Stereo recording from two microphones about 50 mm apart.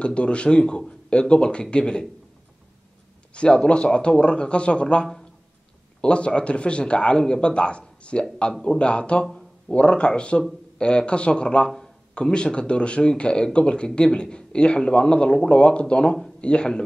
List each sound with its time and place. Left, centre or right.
0.0 s a man's voice: left
3.3 s a man's voice: left